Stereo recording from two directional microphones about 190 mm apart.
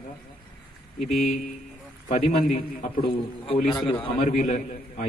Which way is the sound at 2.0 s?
40° left (ahead or behind).